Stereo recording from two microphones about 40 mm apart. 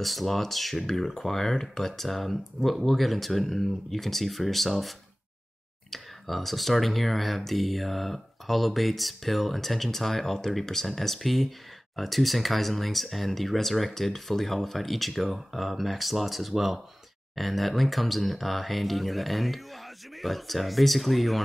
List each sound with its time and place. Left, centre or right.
0.0 s speech: centre